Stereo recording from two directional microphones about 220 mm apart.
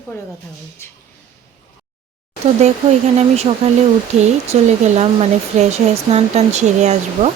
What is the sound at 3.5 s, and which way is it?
Speech, 25° right (ahead or behind).